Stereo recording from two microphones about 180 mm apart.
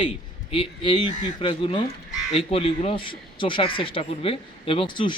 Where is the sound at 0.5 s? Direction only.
30° left (ahead or behind).